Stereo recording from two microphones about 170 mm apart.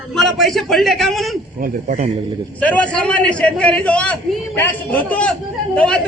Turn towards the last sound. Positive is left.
turn(degrees=5)  # may be behind; listen again after turning